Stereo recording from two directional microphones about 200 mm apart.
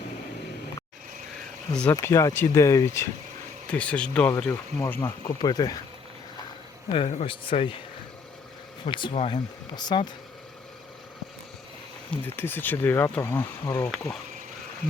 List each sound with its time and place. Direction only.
1.7 s speech: 10° left (ahead or behind)
6.9 s speech: 30° left (ahead or behind)
8.9 s speech: 25° left (ahead or behind)
12.1 s speech: 10° left (ahead or behind)